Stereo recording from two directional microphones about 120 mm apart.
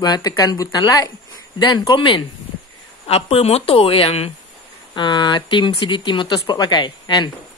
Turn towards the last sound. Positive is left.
turn(degrees=40)  # may be behind; listen again after turning